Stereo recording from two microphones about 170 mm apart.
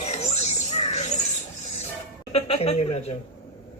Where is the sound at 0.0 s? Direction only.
40° left (ahead or behind).